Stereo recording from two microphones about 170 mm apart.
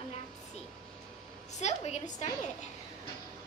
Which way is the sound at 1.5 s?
40° left (ahead or behind).